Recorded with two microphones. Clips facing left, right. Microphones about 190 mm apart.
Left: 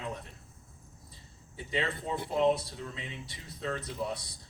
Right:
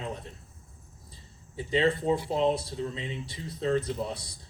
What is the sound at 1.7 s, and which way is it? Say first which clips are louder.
A man's voice: right 9 dB; 30° right (ahead or behind).